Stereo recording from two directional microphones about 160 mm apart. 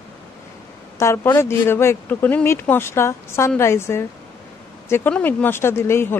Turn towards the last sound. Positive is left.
turn(degrees=15)  # may be behind; listen again after turning